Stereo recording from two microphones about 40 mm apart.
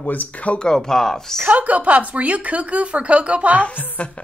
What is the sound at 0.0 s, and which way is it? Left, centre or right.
Speech, left.